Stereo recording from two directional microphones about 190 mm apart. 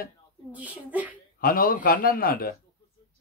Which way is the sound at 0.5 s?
10° right (ahead or behind).